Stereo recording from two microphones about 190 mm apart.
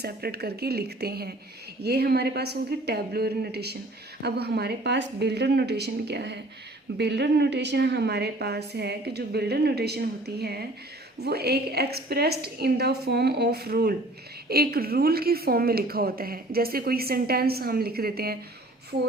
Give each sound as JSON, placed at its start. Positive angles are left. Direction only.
{"t": 0.0, "sound": "a woman's voice", "side_deg": -55}